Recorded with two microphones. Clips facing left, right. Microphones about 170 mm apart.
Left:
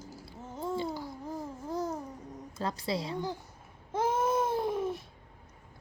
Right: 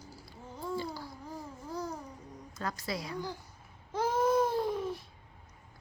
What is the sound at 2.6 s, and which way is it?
Speech, 25° left (ahead or behind).